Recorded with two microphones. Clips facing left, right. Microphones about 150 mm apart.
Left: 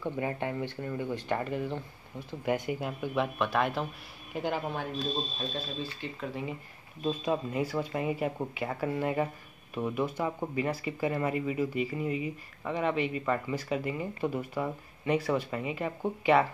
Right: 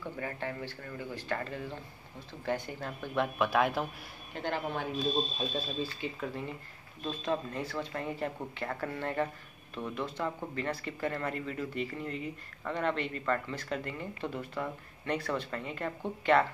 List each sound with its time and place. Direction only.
0.0 s speech: 20° left (ahead or behind)
3.3 s speech: centre (ahead or behind)
6.2 s speech: centre (ahead or behind)